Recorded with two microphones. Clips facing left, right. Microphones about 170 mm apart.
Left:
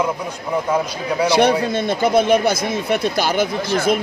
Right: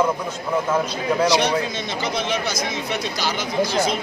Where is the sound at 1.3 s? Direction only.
55° left (ahead or behind).